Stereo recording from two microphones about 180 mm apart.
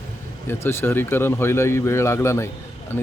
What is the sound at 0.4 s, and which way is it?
Speech, 15° left (ahead or behind).